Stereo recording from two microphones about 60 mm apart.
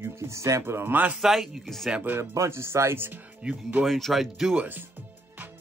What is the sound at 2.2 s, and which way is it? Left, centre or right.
Speech, right.